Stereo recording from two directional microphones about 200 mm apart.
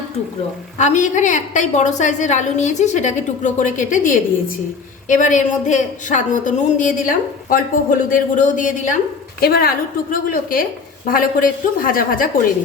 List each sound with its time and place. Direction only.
0.8 s a woman's voice: 35° left (ahead or behind)